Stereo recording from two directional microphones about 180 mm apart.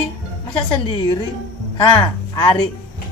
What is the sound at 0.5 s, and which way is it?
Speech, 25° left (ahead or behind).